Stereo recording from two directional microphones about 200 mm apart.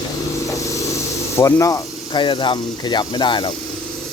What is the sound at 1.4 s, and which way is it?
Speech, 15° left (ahead or behind).